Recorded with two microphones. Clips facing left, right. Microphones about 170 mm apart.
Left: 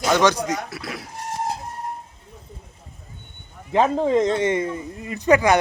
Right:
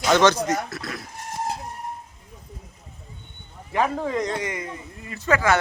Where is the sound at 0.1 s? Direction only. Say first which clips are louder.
Right 1 dB; 10° left (ahead or behind).